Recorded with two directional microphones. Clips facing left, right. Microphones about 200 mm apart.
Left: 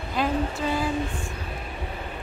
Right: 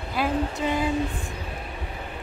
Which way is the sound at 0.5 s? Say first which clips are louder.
Right 1 dB; 20° right (ahead or behind).